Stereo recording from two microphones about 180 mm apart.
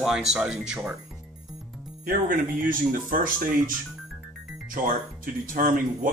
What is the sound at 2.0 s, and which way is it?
Speech, 50° right (ahead or behind).